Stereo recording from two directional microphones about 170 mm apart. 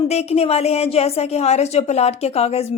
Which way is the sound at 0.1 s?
40° left (ahead or behind).